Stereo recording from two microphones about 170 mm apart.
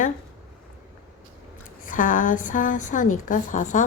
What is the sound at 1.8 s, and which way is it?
A woman's voice, 50° left (ahead or behind).